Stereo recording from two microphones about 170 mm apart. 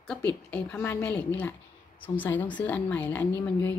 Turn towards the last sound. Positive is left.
turn(degrees=10)  # may be behind; listen again after turning